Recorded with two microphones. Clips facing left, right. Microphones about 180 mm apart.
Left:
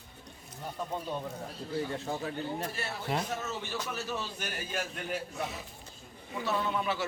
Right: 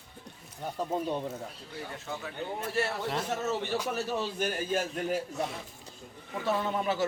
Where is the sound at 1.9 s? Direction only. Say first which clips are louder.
Left 4 dB; 35° left (ahead or behind).